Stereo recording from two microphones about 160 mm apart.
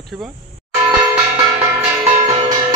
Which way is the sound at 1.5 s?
15° right (ahead or behind).